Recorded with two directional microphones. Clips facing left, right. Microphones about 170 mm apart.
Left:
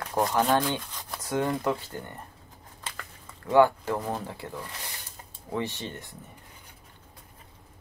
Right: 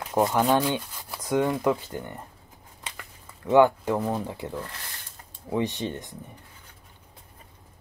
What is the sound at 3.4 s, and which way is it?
Speech, 20° right (ahead or behind).